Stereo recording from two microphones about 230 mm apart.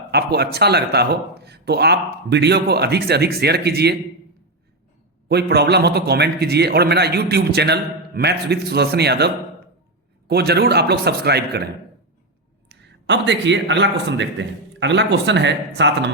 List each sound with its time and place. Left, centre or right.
0.1 s a man's voice: right
5.3 s a man's voice: right